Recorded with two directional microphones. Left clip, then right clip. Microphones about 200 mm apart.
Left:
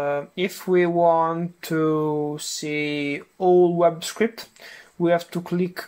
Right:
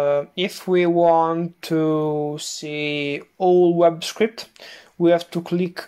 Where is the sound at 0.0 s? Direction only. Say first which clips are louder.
Right 4 dB; 20° right (ahead or behind).